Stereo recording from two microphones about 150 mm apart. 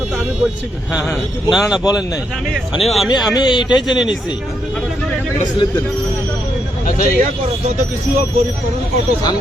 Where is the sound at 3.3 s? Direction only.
30° left (ahead or behind).